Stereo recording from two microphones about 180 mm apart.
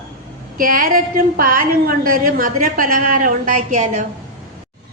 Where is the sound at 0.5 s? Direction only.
50° right (ahead or behind).